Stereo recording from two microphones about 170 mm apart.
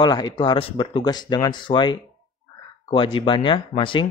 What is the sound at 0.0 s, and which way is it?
Speech, 25° left (ahead or behind).